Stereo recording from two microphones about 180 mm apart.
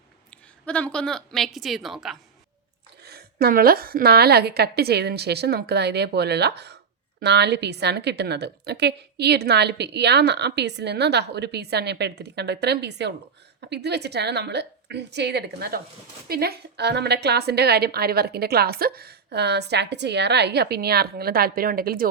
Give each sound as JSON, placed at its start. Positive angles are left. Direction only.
{"t": 0.6, "sound": "a woman's voice", "side_deg": 5}
{"t": 3.0, "sound": "a woman's voice", "side_deg": -60}